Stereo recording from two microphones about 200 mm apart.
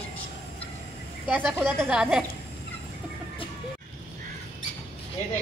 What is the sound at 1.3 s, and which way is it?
Speech, 10° right (ahead or behind).